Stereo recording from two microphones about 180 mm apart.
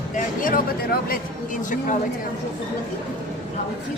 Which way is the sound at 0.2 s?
50° left (ahead or behind).